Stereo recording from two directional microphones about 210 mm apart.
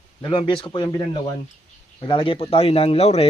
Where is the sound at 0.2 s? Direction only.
20° left (ahead or behind).